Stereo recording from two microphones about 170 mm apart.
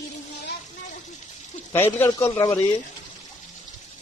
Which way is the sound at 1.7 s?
10° left (ahead or behind).